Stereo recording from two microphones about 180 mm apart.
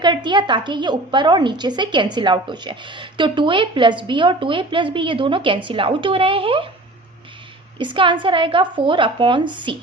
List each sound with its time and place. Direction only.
0.0 s a woman's voice: 25° right (ahead or behind)
7.8 s a woman's voice: 25° right (ahead or behind)